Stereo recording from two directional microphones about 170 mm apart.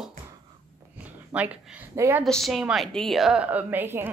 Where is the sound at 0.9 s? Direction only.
10° right (ahead or behind).